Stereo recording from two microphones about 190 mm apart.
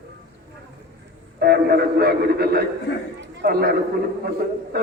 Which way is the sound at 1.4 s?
55° right (ahead or behind).